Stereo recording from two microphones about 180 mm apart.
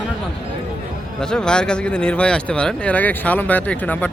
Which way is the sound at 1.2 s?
5° left (ahead or behind).